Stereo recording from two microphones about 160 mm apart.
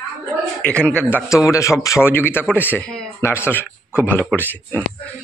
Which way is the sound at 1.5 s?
20° left (ahead or behind).